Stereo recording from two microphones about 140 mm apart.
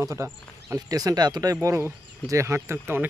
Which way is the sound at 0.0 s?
20° right (ahead or behind).